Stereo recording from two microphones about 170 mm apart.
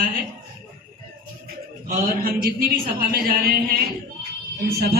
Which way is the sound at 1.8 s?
60° right (ahead or behind).